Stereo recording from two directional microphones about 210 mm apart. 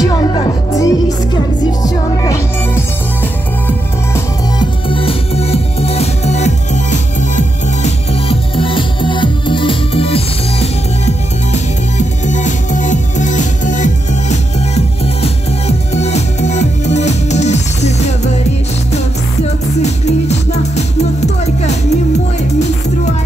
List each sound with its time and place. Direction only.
0.0 s music: 20° left (ahead or behind)
4.6 s music: 25° left (ahead or behind)
19.8 s music: 30° left (ahead or behind)